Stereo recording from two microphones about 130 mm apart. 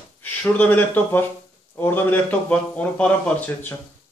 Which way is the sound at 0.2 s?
10° left (ahead or behind).